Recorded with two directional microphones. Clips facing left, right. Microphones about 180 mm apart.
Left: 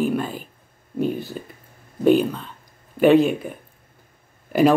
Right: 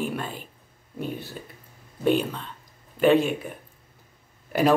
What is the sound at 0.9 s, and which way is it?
Speech, 50° left (ahead or behind).